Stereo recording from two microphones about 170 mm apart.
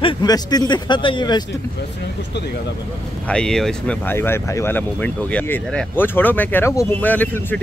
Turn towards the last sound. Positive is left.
turn(degrees=10)  # may be behind; listen again after turning